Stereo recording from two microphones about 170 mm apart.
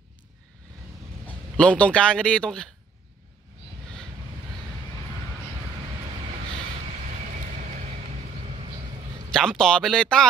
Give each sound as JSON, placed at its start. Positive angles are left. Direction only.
{"t": 1.6, "sound": "speech", "side_deg": 5}
{"t": 7.6, "sound": "vehicle", "side_deg": -45}
{"t": 9.3, "sound": "speech", "side_deg": 5}